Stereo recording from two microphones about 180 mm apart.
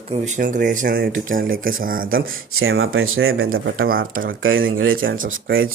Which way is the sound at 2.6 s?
90° right.